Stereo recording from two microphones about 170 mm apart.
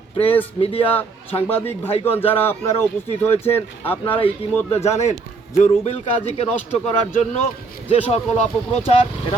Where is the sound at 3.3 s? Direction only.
35° left (ahead or behind).